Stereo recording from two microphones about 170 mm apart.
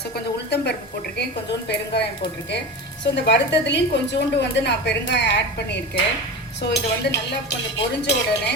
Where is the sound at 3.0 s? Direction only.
90° left.